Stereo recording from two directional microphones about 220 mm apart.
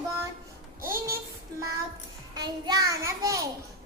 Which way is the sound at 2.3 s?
20° right (ahead or behind).